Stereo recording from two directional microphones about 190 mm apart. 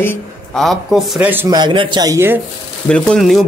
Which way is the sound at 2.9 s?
5° left (ahead or behind).